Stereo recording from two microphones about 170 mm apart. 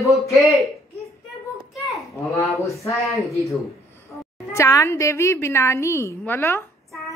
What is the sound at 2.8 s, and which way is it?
Speech, 20° left (ahead or behind).